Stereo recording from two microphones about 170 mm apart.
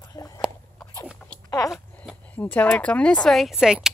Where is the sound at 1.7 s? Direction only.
5° left (ahead or behind).